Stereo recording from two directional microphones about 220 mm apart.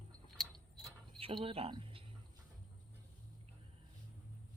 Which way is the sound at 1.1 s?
25° right (ahead or behind).